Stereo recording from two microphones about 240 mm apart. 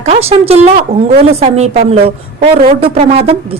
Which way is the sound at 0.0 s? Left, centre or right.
Right.